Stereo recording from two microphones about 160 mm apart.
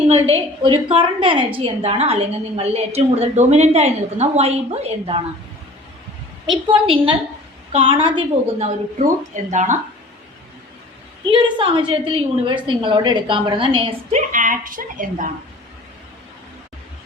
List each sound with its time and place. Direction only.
0.2 s a woman's voice: 30° right (ahead or behind)
6.7 s a woman's voice: 35° right (ahead or behind); by 9.7 s 50° right (ahead or behind)
11.3 s a woman's voice: 30° right (ahead or behind)
14.1 s a woman's voice: 50° right (ahead or behind)